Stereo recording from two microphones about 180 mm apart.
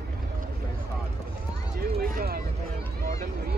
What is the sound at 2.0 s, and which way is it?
Speech, 55° right (ahead or behind).